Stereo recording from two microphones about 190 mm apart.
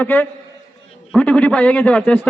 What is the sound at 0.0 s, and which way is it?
A man's voice, 10° left (ahead or behind).